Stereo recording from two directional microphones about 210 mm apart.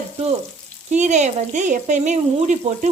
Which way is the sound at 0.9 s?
35° right (ahead or behind).